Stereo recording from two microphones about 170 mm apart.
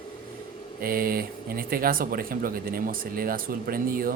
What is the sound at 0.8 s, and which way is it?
Speech, 60° right (ahead or behind).